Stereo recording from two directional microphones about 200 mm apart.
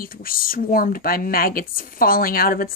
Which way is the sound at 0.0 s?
45° left (ahead or behind).